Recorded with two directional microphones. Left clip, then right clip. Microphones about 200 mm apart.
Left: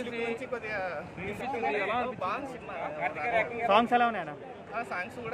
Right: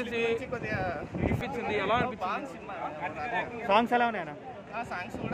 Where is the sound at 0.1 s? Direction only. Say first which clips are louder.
Right 6 dB; 50° right (ahead or behind).